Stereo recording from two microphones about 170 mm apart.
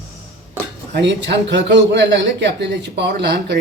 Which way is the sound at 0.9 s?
90° right.